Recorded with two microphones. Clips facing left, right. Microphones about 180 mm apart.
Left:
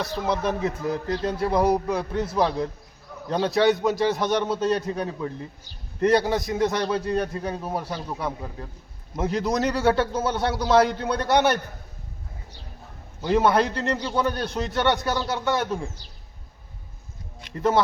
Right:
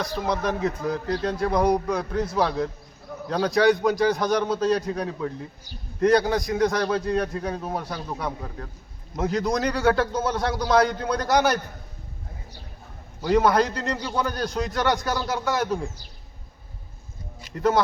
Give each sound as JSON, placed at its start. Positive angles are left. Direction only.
{"t": 0.0, "sound": "a man's voice", "side_deg": 5}
{"t": 10.9, "sound": "a man's voice", "side_deg": 30}
{"t": 13.2, "sound": "a man's voice", "side_deg": 5}
{"t": 17.4, "sound": "speech", "side_deg": 0}